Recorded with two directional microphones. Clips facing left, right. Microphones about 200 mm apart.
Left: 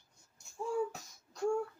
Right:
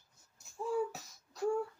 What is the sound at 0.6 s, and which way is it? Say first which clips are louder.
Beatboxing: even; centre (ahead or behind).